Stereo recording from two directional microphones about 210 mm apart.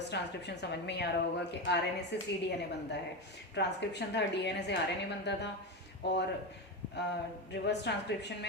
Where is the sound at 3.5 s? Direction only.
55° left (ahead or behind).